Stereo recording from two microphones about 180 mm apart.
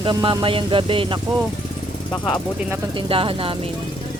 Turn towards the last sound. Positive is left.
turn(degrees=-30)  # may be behind; listen again after turning